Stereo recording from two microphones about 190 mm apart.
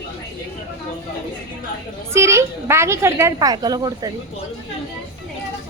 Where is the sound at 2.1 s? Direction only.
15° right (ahead or behind).